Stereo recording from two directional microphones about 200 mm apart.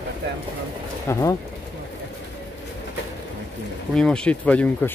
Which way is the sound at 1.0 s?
15° left (ahead or behind).